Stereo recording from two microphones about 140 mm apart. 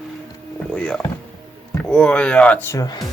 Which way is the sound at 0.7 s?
5° left (ahead or behind).